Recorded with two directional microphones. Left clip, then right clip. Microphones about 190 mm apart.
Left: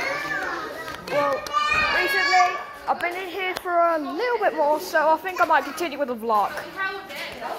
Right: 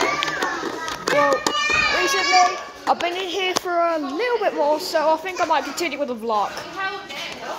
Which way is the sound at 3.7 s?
10° right (ahead or behind).